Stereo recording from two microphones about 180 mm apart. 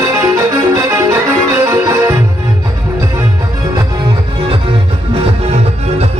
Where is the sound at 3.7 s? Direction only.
30° right (ahead or behind).